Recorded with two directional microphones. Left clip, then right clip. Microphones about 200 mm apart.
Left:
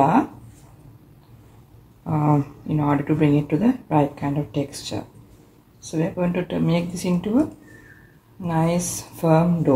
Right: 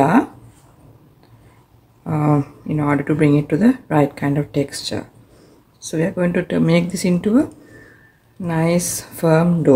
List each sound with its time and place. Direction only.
2.0 s speech: 15° right (ahead or behind)